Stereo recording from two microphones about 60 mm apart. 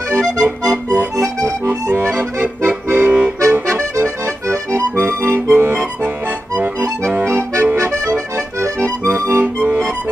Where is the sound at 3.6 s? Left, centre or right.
Right.